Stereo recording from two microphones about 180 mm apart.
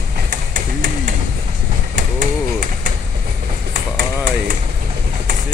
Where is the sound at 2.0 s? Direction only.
45° right (ahead or behind).